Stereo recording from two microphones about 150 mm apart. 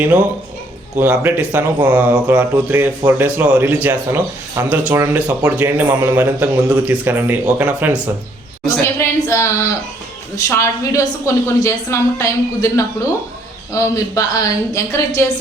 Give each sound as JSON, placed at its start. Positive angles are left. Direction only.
{"t": 0.0, "sound": "speech", "side_deg": -10}
{"t": 8.6, "sound": "a woman's voice", "side_deg": 20}